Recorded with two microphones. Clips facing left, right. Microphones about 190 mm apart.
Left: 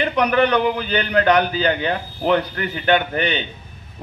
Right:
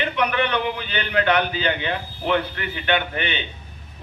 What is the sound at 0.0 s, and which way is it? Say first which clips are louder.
A man's voice: left 5 dB; 40° left (ahead or behind).